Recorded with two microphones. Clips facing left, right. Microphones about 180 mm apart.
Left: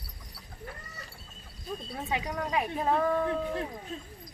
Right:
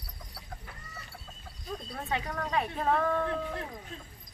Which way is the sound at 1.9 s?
5° left (ahead or behind).